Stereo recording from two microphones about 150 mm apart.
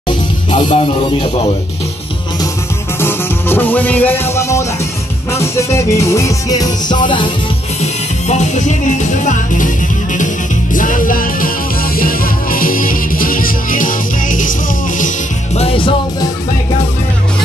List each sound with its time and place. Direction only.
0.5 s speech: 50° left (ahead or behind)
3.0 s music: 15° left (ahead or behind); by 7.3 s 35° left (ahead or behind)
7.8 s music: 50° left (ahead or behind)
15.6 s music: 35° left (ahead or behind)